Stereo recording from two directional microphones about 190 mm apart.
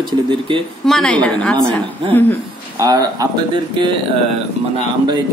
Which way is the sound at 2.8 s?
20° right (ahead or behind).